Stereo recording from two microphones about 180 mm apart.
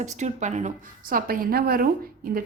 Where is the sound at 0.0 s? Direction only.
40° right (ahead or behind).